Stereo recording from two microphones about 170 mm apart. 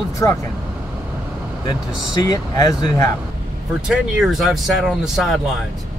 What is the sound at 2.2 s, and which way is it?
Speech, 25° left (ahead or behind).